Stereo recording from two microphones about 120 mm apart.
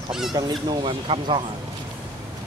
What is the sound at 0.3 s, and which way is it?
Speech, 35° right (ahead or behind).